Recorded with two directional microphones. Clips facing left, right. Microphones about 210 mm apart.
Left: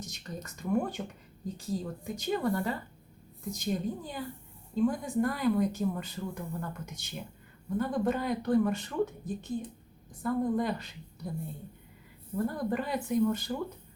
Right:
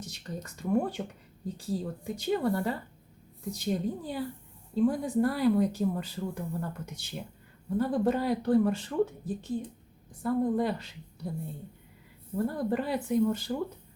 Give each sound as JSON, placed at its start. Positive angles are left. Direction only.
{"t": 0.0, "sound": "speech", "side_deg": -30}
{"t": 12.4, "sound": "speech", "side_deg": -30}